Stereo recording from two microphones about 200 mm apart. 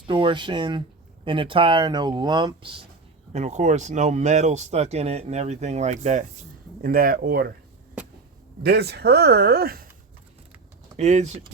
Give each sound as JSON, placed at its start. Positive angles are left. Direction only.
{"t": 0.1, "sound": "speech", "side_deg": -25}
{"t": 6.8, "sound": "speech", "side_deg": -45}
{"t": 8.6, "sound": "speech", "side_deg": -55}
{"t": 10.9, "sound": "speech", "side_deg": -35}